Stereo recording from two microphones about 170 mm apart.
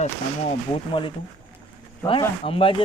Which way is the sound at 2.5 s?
35° left (ahead or behind).